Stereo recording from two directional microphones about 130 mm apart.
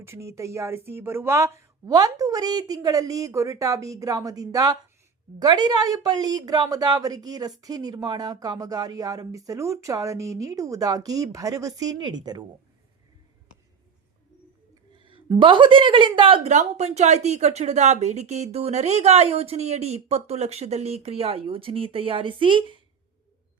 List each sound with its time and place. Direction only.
0.0 s speech: 20° right (ahead or behind)
15.0 s a woman's voice: 40° right (ahead or behind)
16.5 s speech: 60° right (ahead or behind); by 22.8 s 40° right (ahead or behind)